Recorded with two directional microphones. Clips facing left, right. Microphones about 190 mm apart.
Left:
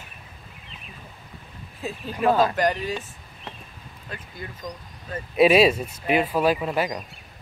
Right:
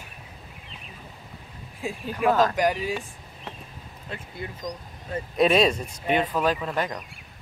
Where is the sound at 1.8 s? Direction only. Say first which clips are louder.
Even; 10° right (ahead or behind).